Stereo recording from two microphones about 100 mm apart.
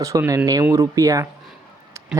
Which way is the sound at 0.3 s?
35° right (ahead or behind).